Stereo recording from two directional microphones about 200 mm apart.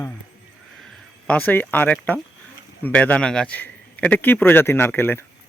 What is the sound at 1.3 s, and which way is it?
Speech, 5° left (ahead or behind).